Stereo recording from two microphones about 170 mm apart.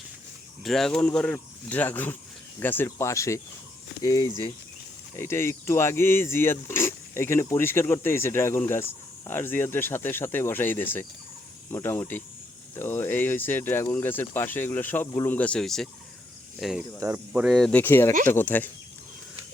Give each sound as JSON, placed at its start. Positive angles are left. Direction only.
{"t": 0.6, "sound": "speech", "side_deg": 0}
{"t": 17.0, "sound": "speech", "side_deg": -10}